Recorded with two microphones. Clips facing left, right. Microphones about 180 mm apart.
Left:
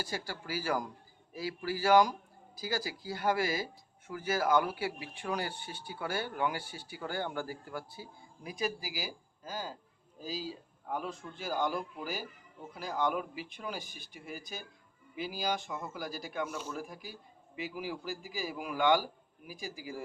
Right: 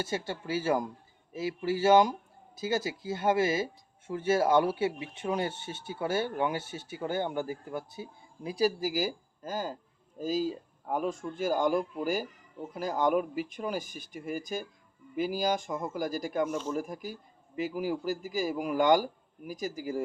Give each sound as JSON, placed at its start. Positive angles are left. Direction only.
{"t": 0.0, "sound": "speech", "side_deg": -25}
{"t": 8.5, "sound": "a man's voice", "side_deg": -40}